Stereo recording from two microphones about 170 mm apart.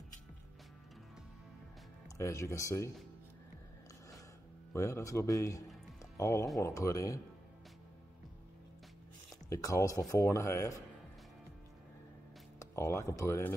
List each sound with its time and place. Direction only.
2.1 s speech: 15° left (ahead or behind)
4.7 s speech: 15° left (ahead or behind)
9.5 s speech: 20° left (ahead or behind)
12.5 s speech: 15° left (ahead or behind)